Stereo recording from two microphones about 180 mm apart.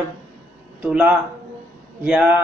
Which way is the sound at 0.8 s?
5° right (ahead or behind).